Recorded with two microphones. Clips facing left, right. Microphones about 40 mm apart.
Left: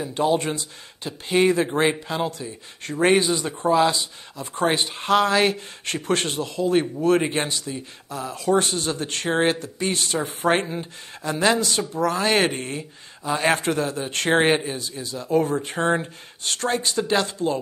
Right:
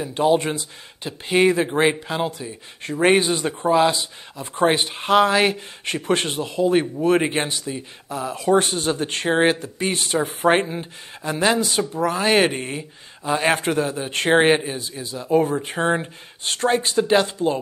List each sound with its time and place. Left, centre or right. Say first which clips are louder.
0.1 s speech: right 3 dB; centre
3.6 s speech: right 1 dB; centre